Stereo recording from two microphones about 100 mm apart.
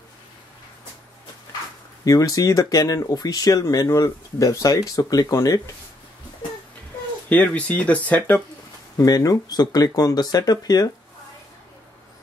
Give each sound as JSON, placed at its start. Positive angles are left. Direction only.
{"t": 2.0, "sound": "speech", "side_deg": 35}
{"t": 6.4, "sound": "wail", "side_deg": 50}
{"t": 7.2, "sound": "speech", "side_deg": 15}
{"t": 8.9, "sound": "speech", "side_deg": 40}